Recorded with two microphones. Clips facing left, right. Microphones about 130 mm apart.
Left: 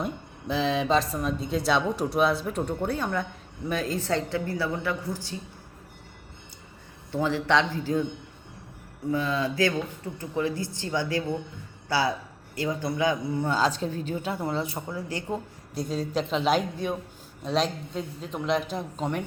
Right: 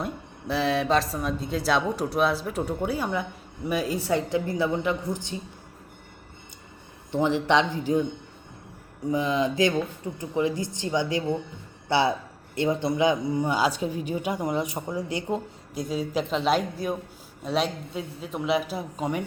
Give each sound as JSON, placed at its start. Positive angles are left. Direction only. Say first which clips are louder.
{"t": 0.0, "sound": "a woman's voice", "louder": "even", "side_deg": 0}
{"t": 7.1, "sound": "a woman's voice", "louder": "right 2 dB", "side_deg": -20}
{"t": 9.0, "sound": "a woman's voice", "louder": "right 2 dB", "side_deg": -15}
{"t": 15.7, "sound": "a woman's voice", "louder": "right 1 dB", "side_deg": -5}